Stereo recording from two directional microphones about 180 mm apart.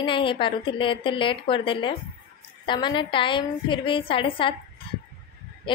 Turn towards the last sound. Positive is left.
turn(degrees=30)  # may be behind; listen again after turning